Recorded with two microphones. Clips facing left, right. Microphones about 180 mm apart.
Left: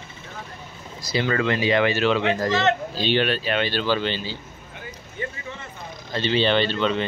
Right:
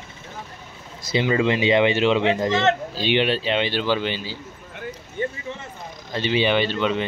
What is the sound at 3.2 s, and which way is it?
Speech, 25° right (ahead or behind).